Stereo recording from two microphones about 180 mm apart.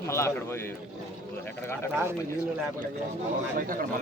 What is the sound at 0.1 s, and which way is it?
Speech, 15° left (ahead or behind).